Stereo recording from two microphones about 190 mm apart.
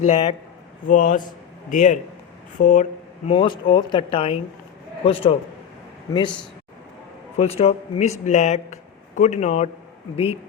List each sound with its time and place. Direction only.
0.0 s a man's voice: 40° left (ahead or behind)
3.2 s speech: 25° left (ahead or behind)
6.1 s speech: 20° left (ahead or behind)
7.3 s speech: 30° left (ahead or behind)